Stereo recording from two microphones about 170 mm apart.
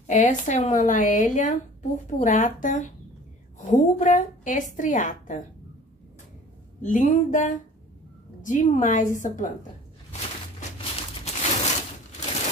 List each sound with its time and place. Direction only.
0.0 s speech: 45° left (ahead or behind)
6.8 s speech: 50° left (ahead or behind)
10.8 s a sound: 40° left (ahead or behind)